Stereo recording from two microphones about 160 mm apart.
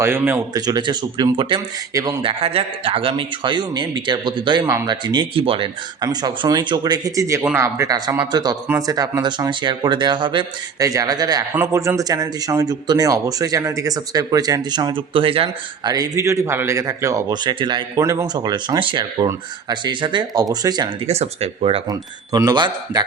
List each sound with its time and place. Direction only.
0.0 s speech: 15° right (ahead or behind)
2.2 s speech: 40° right (ahead or behind)
21.1 s speech: 40° right (ahead or behind)
21.8 s speech: 25° right (ahead or behind)